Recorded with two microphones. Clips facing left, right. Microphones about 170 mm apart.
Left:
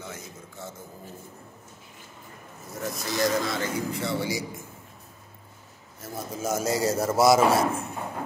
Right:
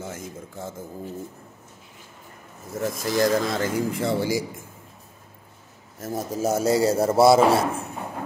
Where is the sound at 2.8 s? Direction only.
45° right (ahead or behind).